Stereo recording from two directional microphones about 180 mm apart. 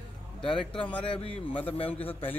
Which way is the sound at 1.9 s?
10° left (ahead or behind).